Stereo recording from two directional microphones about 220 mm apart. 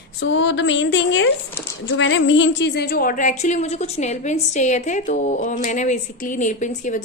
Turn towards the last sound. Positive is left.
turn(degrees=35)  # may be behind; listen again after turning